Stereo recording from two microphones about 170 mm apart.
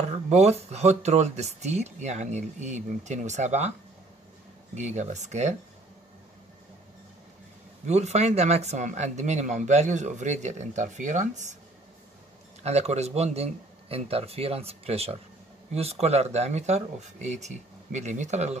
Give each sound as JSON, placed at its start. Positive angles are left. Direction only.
{"t": 0.1, "sound": "speech", "side_deg": -40}
{"t": 4.7, "sound": "speech", "side_deg": -45}
{"t": 7.8, "sound": "speech", "side_deg": -40}
{"t": 12.6, "sound": "speech", "side_deg": -40}